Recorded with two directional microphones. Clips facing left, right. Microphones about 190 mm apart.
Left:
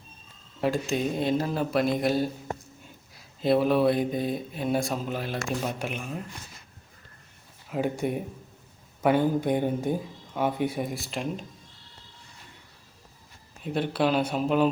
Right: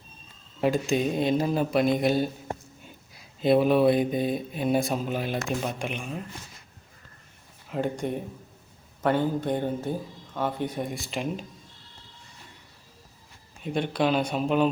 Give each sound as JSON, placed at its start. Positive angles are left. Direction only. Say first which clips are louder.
{"t": 0.6, "sound": "speech", "louder": "right 2 dB", "side_deg": -20}
{"t": 1.9, "sound": "speech", "louder": "right 2 dB", "side_deg": 0}
{"t": 3.4, "sound": "speech", "louder": "right 2 dB", "side_deg": -20}
{"t": 5.6, "sound": "speech", "louder": "even", "side_deg": 5}
{"t": 7.7, "sound": "speech", "louder": "left 1 dB", "side_deg": 5}
{"t": 13.6, "sound": "speech", "louder": "even", "side_deg": 0}